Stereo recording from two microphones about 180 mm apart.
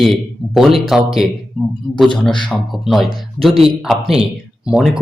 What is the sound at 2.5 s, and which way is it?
Speech, centre (ahead or behind).